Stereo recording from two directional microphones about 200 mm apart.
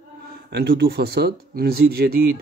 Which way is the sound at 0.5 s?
55° right (ahead or behind).